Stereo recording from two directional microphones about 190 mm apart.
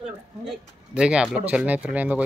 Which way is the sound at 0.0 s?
5° right (ahead or behind).